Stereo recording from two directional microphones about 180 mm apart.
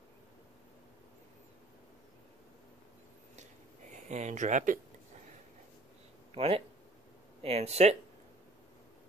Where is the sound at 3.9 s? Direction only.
40° right (ahead or behind).